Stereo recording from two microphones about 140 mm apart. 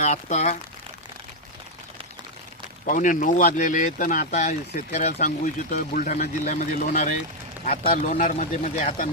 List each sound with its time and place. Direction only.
0.0 s speech: 55° left (ahead or behind)
2.8 s speech: 70° left (ahead or behind)
4.3 s speech: 55° left (ahead or behind)